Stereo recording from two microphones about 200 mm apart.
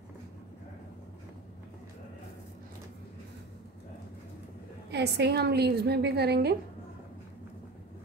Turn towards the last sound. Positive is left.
turn(degrees=-55)  # may be behind; listen again after turning